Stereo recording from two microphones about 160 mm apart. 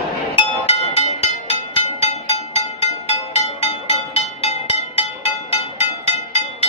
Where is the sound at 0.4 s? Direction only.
40° left (ahead or behind).